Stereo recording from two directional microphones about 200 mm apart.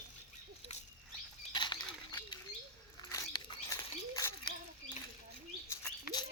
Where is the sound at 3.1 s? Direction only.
20° left (ahead or behind).